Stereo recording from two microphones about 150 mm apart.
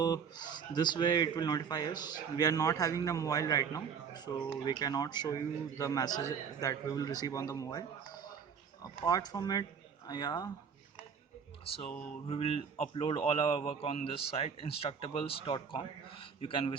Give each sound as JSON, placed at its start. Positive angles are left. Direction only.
{"t": 0.0, "sound": "speech", "side_deg": 25}
{"t": 12.3, "sound": "a man's voice", "side_deg": 40}